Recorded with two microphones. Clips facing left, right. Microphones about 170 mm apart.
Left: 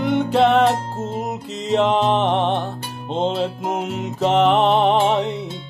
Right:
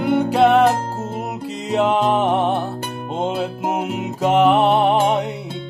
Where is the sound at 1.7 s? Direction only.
10° right (ahead or behind).